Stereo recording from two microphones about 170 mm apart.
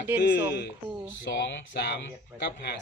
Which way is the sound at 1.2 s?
90° left.